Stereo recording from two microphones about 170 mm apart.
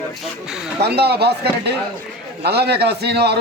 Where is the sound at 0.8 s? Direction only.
70° right (ahead or behind).